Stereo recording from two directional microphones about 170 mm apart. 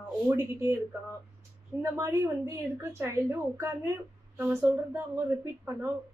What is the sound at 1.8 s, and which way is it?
A woman's voice, 15° right (ahead or behind).